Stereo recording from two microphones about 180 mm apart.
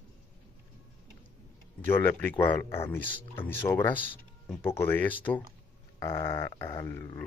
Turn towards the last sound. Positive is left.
turn(degrees=15)  # may be behind; listen again after turning